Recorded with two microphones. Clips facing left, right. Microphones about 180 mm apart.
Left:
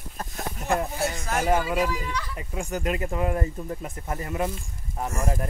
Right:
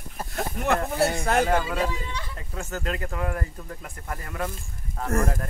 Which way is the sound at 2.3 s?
15° left (ahead or behind).